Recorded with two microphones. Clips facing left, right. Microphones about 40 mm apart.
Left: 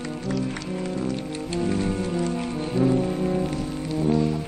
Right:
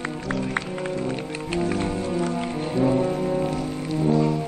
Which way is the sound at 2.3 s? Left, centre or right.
Centre.